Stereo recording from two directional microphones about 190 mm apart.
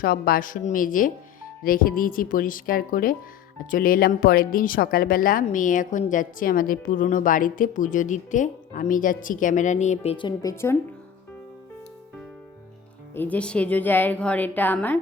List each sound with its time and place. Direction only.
0.0 s speech: 50° left (ahead or behind); by 10.5 s 25° left (ahead or behind)
10.5 s a woman's voice: 15° left (ahead or behind)
13.1 s a woman's voice: 10° left (ahead or behind)